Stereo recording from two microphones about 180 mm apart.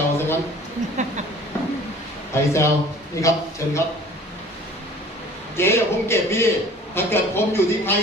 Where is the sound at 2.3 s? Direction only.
15° left (ahead or behind).